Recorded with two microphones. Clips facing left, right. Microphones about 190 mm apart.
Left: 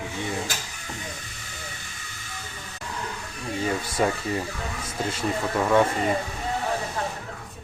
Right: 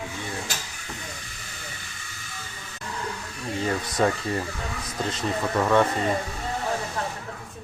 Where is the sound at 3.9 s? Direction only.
10° left (ahead or behind).